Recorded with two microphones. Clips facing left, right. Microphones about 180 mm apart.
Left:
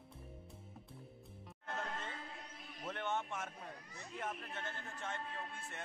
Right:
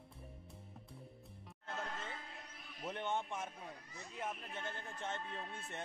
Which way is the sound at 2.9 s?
15° right (ahead or behind).